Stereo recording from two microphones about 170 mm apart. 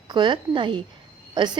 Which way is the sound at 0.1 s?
25° right (ahead or behind).